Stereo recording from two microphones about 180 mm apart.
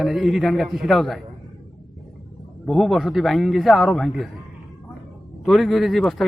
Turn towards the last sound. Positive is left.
turn(degrees=0)  # may be behind; listen again after turning